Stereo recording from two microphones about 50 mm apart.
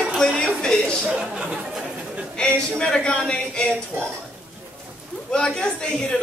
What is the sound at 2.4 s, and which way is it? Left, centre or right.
A man's voice, centre.